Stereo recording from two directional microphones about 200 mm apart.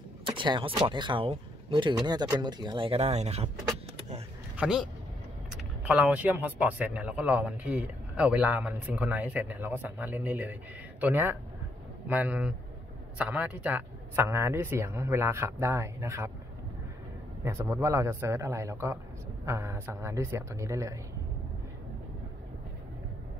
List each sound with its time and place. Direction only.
0.2 s speech: 25° right (ahead or behind)
4.6 s speech: 5° right (ahead or behind)
5.9 s a man's voice: 5° right (ahead or behind)
17.5 s a man's voice: 15° right (ahead or behind)